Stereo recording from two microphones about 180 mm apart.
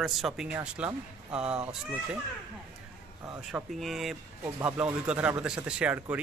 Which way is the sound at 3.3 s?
5° right (ahead or behind).